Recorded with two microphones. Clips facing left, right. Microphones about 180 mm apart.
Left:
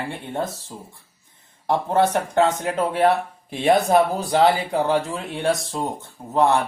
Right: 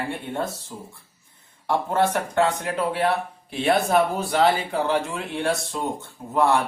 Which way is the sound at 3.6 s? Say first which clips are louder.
Left 3 dB; 40° left (ahead or behind).